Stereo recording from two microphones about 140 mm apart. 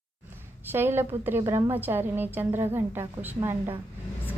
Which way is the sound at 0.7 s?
15° right (ahead or behind).